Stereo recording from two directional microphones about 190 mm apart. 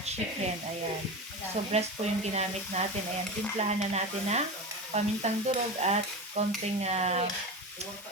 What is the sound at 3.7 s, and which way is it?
Speech, 35° right (ahead or behind).